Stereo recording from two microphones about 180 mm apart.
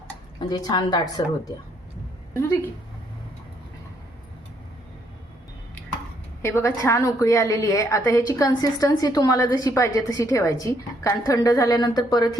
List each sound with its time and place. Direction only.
0.3 s a woman's voice: 25° left (ahead or behind)
6.4 s a woman's voice: 15° left (ahead or behind)